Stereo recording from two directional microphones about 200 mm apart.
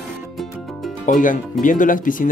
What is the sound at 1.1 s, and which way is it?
Speech, 40° left (ahead or behind).